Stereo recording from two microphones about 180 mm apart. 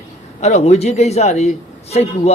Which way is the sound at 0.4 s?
40° left (ahead or behind).